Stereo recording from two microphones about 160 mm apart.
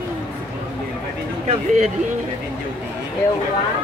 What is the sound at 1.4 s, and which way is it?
Speech, 50° right (ahead or behind).